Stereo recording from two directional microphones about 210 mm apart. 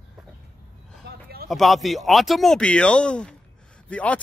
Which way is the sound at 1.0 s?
50° right (ahead or behind).